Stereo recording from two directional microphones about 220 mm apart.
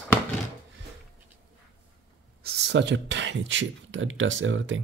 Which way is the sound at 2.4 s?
50° right (ahead or behind).